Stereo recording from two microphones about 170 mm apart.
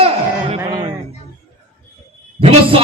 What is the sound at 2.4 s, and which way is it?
Speech, 35° right (ahead or behind).